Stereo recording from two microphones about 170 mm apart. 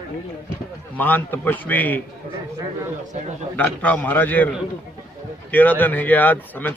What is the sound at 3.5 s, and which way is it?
Speech, 10° left (ahead or behind).